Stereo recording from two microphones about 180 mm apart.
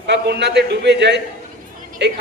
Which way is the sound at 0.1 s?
70° right (ahead or behind).